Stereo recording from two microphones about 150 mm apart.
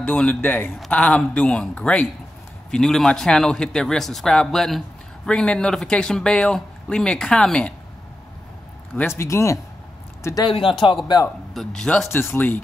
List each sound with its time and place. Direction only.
0.0 s speech: 10° left (ahead or behind)
8.9 s speech: 15° left (ahead or behind)
10.5 s speech: 35° left (ahead or behind)
11.2 s speech: 5° left (ahead or behind)
12.1 s speech: 15° left (ahead or behind)